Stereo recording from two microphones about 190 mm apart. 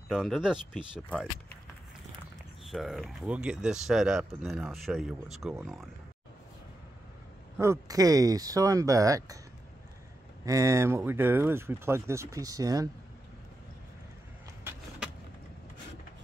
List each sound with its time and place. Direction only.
0.1 s speech: centre (ahead or behind)
2.6 s speech: centre (ahead or behind)
7.5 s speech: 15° right (ahead or behind)
10.4 s speech: 15° right (ahead or behind)
14.6 s vehicle: 10° right (ahead or behind)